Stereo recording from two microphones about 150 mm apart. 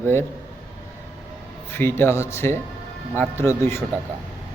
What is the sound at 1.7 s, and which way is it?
Speech, 15° left (ahead or behind).